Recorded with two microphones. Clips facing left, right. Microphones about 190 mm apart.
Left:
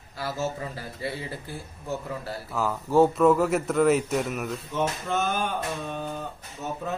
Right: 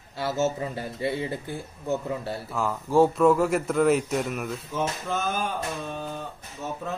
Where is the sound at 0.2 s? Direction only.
25° right (ahead or behind).